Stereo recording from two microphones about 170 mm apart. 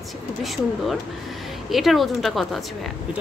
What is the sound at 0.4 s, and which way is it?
A woman's voice, centre (ahead or behind).